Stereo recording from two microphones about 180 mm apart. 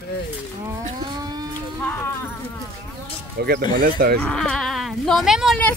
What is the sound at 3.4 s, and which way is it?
Speech, 55° right (ahead or behind).